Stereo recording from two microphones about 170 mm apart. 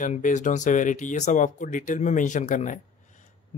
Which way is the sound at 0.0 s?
45° left (ahead or behind).